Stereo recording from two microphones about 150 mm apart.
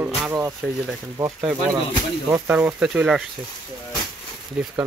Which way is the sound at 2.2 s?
10° right (ahead or behind).